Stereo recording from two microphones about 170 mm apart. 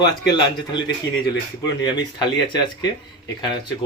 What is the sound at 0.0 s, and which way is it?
A man's voice, 25° left (ahead or behind).